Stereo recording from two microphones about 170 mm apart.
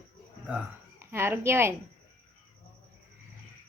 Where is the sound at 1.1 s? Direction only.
15° right (ahead or behind).